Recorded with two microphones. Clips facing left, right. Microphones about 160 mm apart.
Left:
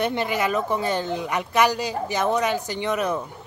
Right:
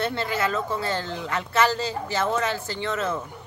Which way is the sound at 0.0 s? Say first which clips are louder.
Left 2 dB; 15° left (ahead or behind).